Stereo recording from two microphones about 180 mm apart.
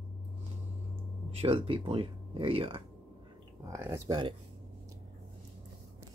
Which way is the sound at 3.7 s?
15° right (ahead or behind).